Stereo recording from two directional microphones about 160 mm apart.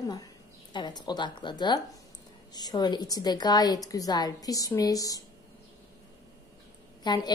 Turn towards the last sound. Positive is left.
turn(degrees=25)  # may be behind; listen again after turning